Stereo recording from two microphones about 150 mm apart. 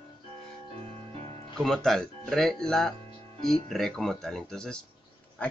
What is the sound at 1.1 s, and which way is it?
Music, 45° right (ahead or behind).